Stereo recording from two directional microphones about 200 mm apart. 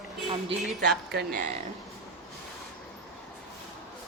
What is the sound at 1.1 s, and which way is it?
Speech, 45° right (ahead or behind).